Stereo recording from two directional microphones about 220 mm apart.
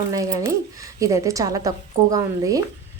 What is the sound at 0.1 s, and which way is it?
A woman's voice, 15° right (ahead or behind).